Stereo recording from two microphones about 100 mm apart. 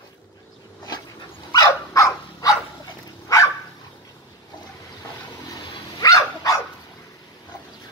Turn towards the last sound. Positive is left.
turn(degrees=35)  # may be behind; listen again after turning